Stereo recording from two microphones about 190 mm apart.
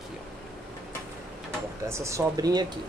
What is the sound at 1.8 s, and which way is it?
Speech, 15° right (ahead or behind).